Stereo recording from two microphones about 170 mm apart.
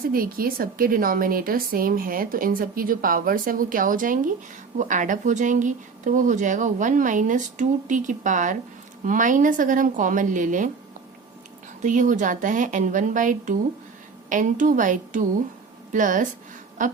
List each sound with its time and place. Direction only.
0.0 s a woman's voice: 60° right (ahead or behind)
11.8 s speech: 50° right (ahead or behind)